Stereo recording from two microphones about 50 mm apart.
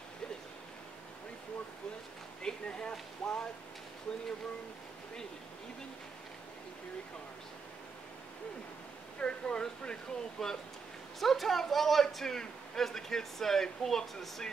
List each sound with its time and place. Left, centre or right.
2.4 s speech: centre
9.2 s a man's voice: centre